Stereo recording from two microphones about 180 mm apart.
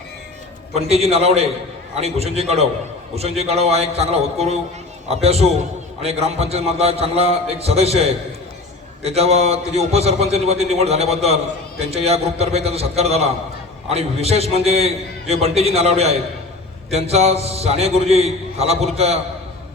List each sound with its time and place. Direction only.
0.8 s a man's voice: 35° right (ahead or behind)